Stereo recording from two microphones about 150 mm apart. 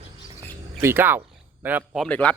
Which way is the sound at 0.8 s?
15° right (ahead or behind).